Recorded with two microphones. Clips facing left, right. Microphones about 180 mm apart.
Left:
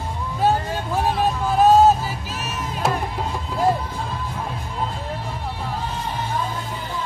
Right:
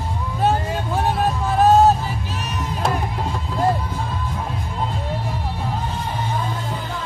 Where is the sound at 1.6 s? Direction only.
Centre (ahead or behind).